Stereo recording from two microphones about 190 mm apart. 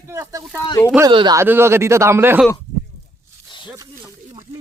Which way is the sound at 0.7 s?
15° left (ahead or behind).